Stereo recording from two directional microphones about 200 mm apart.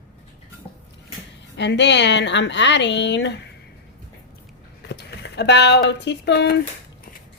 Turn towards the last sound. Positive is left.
turn(degrees=55)  # may be behind; listen again after turning